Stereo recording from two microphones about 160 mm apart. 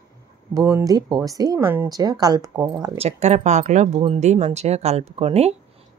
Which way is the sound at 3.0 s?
45° right (ahead or behind).